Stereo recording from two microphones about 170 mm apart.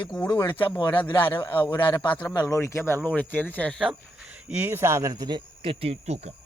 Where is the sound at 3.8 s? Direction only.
5° right (ahead or behind).